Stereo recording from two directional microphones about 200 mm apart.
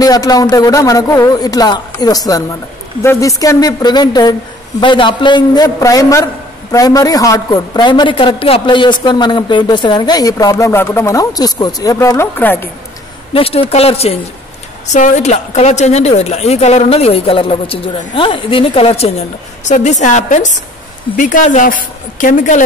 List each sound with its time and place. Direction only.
0.0 s a man's voice: 20° left (ahead or behind)
13.3 s a man's voice: 30° left (ahead or behind)